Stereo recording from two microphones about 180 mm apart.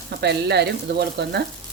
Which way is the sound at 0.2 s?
65° right (ahead or behind).